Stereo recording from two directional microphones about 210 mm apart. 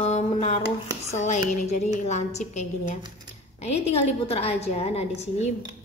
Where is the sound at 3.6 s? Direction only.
30° left (ahead or behind).